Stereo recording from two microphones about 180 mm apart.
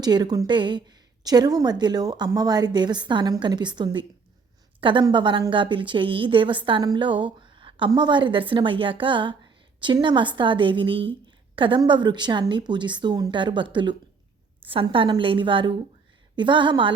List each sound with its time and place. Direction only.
0.0 s a woman's voice: 25° right (ahead or behind)